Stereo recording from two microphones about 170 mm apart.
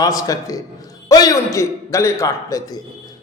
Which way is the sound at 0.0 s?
20° left (ahead or behind).